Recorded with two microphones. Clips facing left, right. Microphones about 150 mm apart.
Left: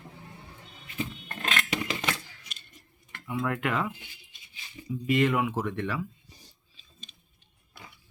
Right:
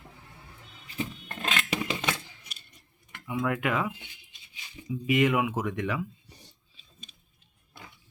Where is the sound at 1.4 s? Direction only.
5° right (ahead or behind).